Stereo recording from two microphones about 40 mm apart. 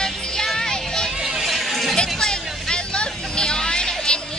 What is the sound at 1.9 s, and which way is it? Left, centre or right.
Hubbub, centre.